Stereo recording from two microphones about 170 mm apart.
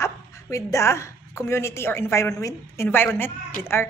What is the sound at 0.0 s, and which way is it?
A woman's voice, 20° left (ahead or behind).